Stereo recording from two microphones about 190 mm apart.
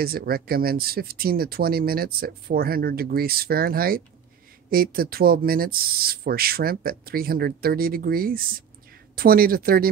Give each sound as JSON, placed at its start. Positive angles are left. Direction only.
{"t": 0.0, "sound": "speech", "side_deg": -55}